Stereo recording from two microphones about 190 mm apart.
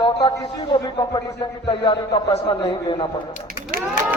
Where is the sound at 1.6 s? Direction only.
25° left (ahead or behind).